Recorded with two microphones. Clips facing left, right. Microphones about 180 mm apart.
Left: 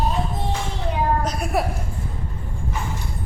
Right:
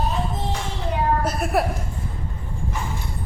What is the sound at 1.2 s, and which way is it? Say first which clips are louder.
Speech: right 1 dB; 5° right (ahead or behind).